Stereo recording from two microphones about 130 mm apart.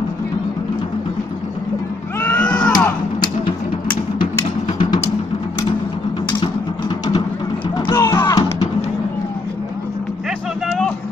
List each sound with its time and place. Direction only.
2.1 s a sound: 10° left (ahead or behind)
2.7 s music: 35° left (ahead or behind)
7.7 s music: 30° left (ahead or behind)